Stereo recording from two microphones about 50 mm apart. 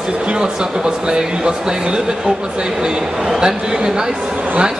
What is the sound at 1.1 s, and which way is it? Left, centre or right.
Speech, centre.